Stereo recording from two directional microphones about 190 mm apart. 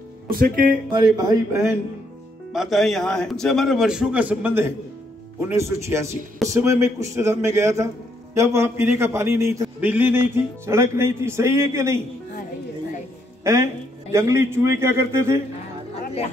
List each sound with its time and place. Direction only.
0.3 s speech: 50° right (ahead or behind)
0.8 s speech: 25° right (ahead or behind)
2.5 s a man's voice: centre (ahead or behind)
13.4 s a man's voice: 15° right (ahead or behind)